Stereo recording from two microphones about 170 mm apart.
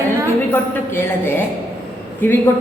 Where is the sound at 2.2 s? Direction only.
15° left (ahead or behind).